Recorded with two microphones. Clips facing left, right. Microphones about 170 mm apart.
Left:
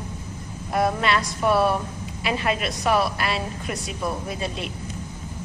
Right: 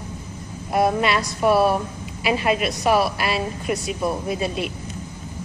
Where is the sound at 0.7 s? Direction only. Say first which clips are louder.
Right 3 dB; 10° right (ahead or behind).